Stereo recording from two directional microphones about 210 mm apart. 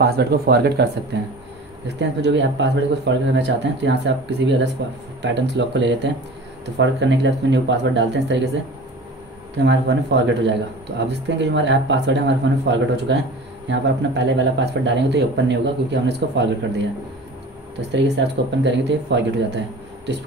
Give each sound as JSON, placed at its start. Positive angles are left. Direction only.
{"t": 0.0, "sound": "speech", "side_deg": -50}
{"t": 1.9, "sound": "speech", "side_deg": -55}
{"t": 9.6, "sound": "speech", "side_deg": -55}